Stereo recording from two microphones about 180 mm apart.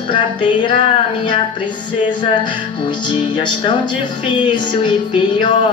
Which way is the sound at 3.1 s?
25° left (ahead or behind).